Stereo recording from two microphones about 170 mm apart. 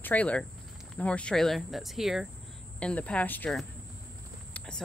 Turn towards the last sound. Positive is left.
turn(degrees=5)  # may be behind; listen again after turning